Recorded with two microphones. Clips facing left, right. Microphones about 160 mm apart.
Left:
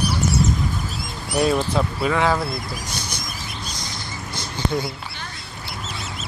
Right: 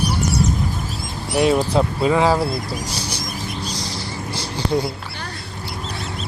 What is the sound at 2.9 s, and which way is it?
Bird, 30° right (ahead or behind).